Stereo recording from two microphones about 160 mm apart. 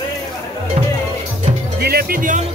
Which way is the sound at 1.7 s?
75° right (ahead or behind).